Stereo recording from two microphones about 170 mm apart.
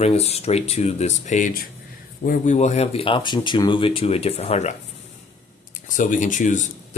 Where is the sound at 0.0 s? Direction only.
35° left (ahead or behind).